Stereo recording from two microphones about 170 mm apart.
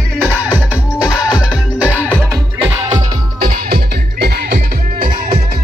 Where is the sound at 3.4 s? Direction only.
65° right (ahead or behind).